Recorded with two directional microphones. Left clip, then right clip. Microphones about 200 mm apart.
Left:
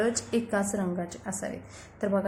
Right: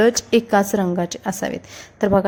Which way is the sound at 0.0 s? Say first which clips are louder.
Right 12 dB; 40° right (ahead or behind).